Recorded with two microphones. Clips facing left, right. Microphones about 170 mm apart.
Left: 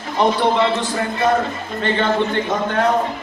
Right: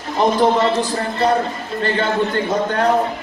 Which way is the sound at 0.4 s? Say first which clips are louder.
Right 2 dB; 40° right (ahead or behind).